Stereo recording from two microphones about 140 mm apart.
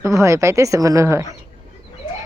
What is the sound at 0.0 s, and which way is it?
A woman's voice, 20° right (ahead or behind).